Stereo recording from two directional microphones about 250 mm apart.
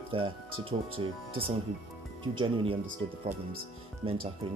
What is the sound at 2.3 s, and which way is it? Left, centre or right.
Speech, centre.